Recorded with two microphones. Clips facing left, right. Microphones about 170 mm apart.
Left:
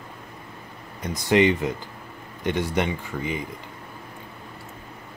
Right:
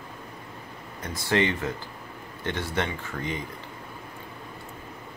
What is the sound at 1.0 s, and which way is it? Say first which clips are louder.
Speech: left 6 dB; 15° left (ahead or behind).